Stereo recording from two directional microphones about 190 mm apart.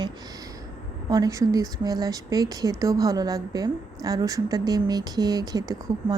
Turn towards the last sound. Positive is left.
turn(degrees=-20)  # may be behind; listen again after turning